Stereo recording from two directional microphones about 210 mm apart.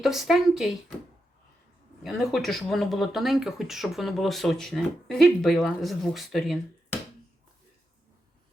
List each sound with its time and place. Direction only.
0.0 s speech: centre (ahead or behind)
2.0 s speech: centre (ahead or behind)